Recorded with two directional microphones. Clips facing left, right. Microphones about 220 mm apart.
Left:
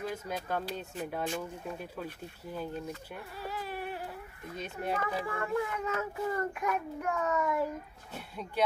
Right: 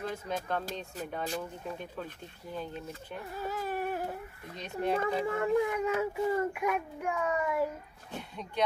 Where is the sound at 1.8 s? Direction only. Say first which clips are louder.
Left 1 dB; 10° left (ahead or behind).